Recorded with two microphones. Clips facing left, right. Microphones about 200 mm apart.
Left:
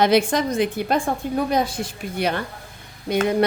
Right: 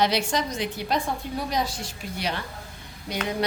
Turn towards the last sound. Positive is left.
turn(degrees=55)  # may be behind; listen again after turning